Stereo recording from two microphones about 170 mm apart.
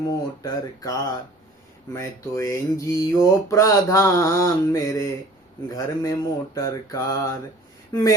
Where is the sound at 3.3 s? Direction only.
15° left (ahead or behind).